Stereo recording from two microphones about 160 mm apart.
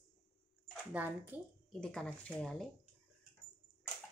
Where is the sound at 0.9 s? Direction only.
10° right (ahead or behind).